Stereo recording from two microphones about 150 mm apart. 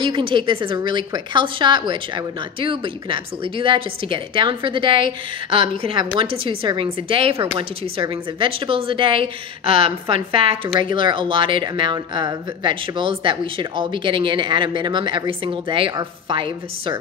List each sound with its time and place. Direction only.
0.0 s a woman's voice: 35° right (ahead or behind)